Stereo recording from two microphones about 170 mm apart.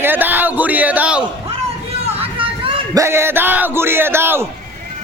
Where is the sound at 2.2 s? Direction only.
30° right (ahead or behind).